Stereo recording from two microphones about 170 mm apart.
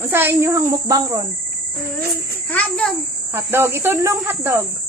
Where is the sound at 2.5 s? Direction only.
10° left (ahead or behind).